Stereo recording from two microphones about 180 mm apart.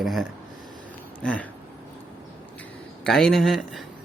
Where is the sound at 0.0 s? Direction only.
Centre (ahead or behind).